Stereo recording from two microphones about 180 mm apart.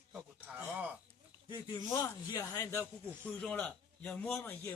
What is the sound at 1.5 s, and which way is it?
Speech, 20° left (ahead or behind).